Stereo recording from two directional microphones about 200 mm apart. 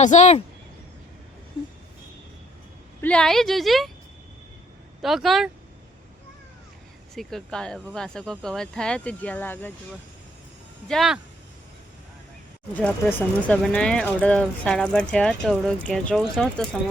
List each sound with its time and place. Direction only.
0.0 s speech: 35° left (ahead or behind)
3.0 s speech: 5° left (ahead or behind)
5.0 s speech: centre (ahead or behind)
7.1 s speech: centre (ahead or behind)
10.8 s speech: centre (ahead or behind)
12.7 s speech: 10° left (ahead or behind)